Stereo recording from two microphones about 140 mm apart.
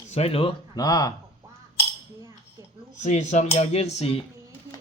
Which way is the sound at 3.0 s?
60° left (ahead or behind).